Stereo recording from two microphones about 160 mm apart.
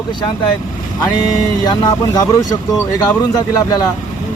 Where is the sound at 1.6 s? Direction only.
25° left (ahead or behind).